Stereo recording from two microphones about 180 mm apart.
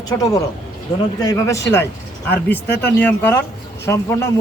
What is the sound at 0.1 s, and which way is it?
Speech, 15° left (ahead or behind).